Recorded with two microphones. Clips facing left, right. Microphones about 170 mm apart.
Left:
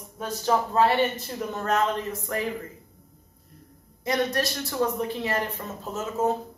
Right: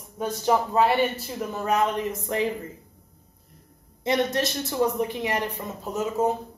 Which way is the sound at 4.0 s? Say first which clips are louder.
Right 2 dB; 25° right (ahead or behind).